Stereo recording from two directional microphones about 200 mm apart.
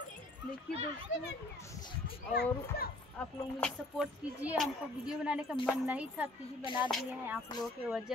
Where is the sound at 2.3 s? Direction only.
55° left (ahead or behind).